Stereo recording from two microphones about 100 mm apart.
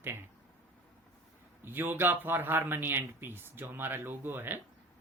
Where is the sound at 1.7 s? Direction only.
20° right (ahead or behind).